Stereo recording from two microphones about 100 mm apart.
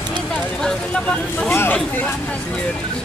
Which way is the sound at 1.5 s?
25° left (ahead or behind).